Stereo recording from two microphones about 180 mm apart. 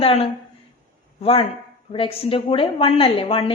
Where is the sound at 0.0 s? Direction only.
35° left (ahead or behind).